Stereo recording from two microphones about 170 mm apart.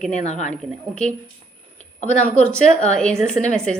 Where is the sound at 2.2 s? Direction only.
5° left (ahead or behind).